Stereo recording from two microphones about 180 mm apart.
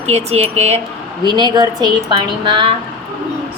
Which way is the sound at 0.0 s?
35° right (ahead or behind).